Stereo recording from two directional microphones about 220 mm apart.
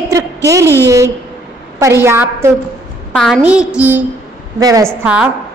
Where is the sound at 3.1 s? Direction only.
Centre (ahead or behind).